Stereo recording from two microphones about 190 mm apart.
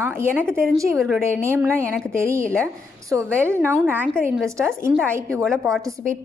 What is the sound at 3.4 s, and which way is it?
A woman's voice, 15° right (ahead or behind).